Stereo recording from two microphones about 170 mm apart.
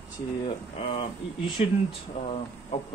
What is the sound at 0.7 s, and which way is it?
Speech, 35° left (ahead or behind).